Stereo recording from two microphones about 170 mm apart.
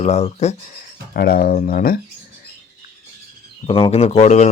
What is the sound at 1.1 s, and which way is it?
Speech, 60° left (ahead or behind).